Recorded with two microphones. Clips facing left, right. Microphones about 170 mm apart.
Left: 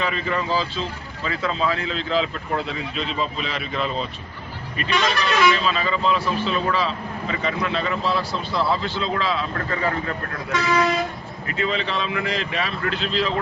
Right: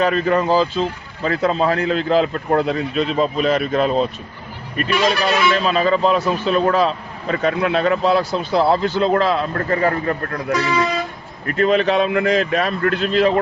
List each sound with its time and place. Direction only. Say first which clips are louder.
0.0 s speech: right 8 dB; 45° right (ahead or behind)
11.4 s speech: right 9 dB; 55° right (ahead or behind)